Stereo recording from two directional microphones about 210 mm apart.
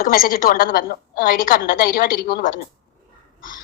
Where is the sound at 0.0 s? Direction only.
45° left (ahead or behind).